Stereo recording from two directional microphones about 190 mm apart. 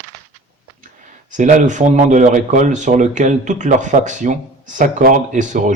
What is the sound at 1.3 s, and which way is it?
Speech, 40° right (ahead or behind).